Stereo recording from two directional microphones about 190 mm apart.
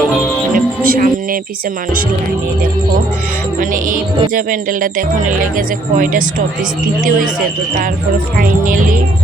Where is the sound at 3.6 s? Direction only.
45° right (ahead or behind).